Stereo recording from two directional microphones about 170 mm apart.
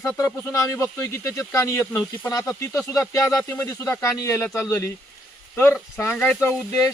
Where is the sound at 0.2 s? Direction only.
15° left (ahead or behind).